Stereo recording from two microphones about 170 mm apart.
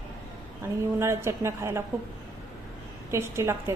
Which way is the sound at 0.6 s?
15° right (ahead or behind).